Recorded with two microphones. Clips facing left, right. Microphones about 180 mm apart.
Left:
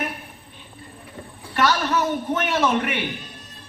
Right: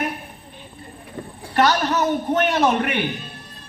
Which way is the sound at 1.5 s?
45° right (ahead or behind).